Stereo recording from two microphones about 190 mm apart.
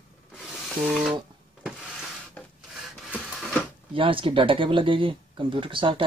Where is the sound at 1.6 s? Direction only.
5° right (ahead or behind).